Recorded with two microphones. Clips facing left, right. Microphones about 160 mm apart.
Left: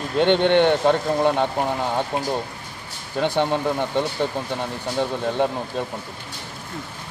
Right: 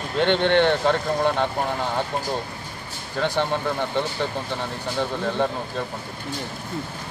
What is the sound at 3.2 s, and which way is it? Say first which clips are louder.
Speech: left 3 dB; 15° left (ahead or behind).